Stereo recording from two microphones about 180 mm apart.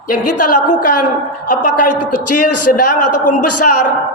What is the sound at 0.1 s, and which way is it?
A man's voice, 50° left (ahead or behind).